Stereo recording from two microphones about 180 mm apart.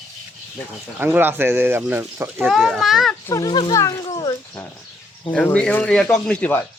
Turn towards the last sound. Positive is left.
turn(degrees=10)  # may be behind; listen again after turning